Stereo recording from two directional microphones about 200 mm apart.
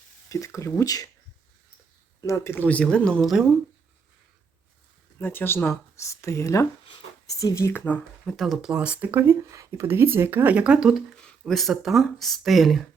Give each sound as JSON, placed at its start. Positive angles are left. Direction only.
{"t": 0.3, "sound": "speech", "side_deg": 15}
{"t": 2.2, "sound": "speech", "side_deg": 15}
{"t": 5.2, "sound": "speech", "side_deg": 10}